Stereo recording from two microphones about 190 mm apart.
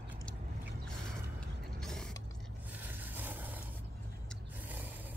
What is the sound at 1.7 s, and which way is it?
Mechanisms, centre (ahead or behind).